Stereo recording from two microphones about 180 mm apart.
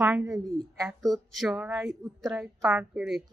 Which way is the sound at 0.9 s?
Centre (ahead or behind).